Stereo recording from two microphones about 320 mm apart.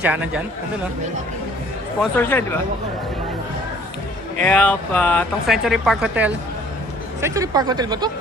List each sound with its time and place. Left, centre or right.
0.0 s speech: centre
2.0 s speech: centre
4.4 s speech: centre